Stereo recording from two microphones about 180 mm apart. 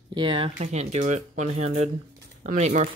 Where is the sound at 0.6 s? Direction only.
40° right (ahead or behind).